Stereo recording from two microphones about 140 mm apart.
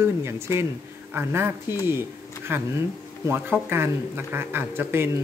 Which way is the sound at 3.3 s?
15° right (ahead or behind).